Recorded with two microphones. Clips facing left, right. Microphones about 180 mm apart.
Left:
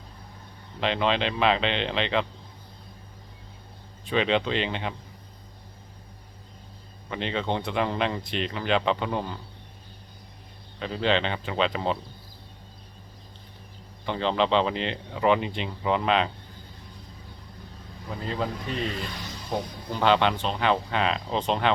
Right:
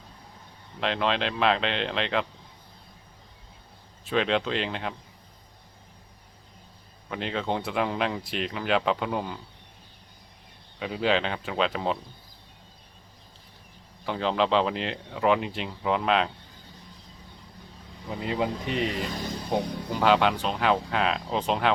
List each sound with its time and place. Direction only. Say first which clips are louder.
0.8 s speech: left 2 dB; centre (ahead or behind)
4.0 s speech: left 1 dB; centre (ahead or behind)
7.1 s speech: left 1 dB; centre (ahead or behind)
10.8 s speech: even; 5° right (ahead or behind)
14.0 s speech: left 1 dB; 5° right (ahead or behind)
18.1 s speech: right 2 dB; 15° right (ahead or behind)